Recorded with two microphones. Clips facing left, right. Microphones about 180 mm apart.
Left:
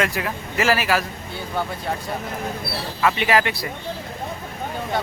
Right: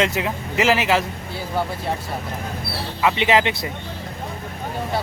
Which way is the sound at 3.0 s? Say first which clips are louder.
Right 1 dB; 20° right (ahead or behind).